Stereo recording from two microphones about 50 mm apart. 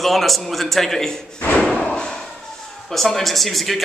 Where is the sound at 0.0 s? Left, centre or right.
Centre.